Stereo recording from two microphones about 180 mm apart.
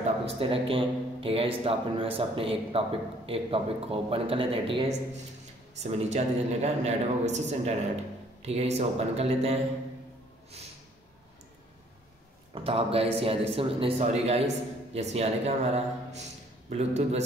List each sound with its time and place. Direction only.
0.0 s a man's voice: 30° right (ahead or behind)
12.6 s a man's voice: 30° right (ahead or behind)